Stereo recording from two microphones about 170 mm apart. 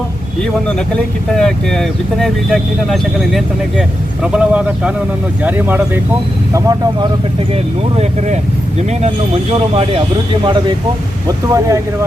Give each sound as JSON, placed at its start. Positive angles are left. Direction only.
{"t": 0.9, "sound": "speech", "side_deg": 5}
{"t": 6.5, "sound": "speech", "side_deg": -20}
{"t": 8.9, "sound": "speech", "side_deg": -40}
{"t": 11.3, "sound": "speech", "side_deg": -20}